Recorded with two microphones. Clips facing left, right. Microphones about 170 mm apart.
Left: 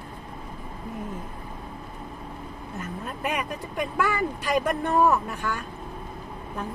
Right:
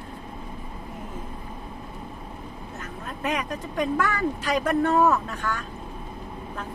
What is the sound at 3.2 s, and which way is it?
Speech, 15° left (ahead or behind).